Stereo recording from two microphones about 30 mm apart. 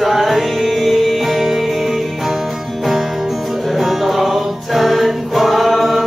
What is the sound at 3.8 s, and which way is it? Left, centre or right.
Music, centre.